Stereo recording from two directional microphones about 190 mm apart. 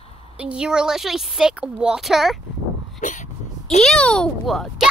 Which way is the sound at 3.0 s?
40° left (ahead or behind).